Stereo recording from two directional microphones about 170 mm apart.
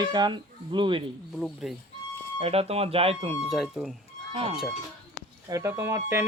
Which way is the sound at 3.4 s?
Centre (ahead or behind).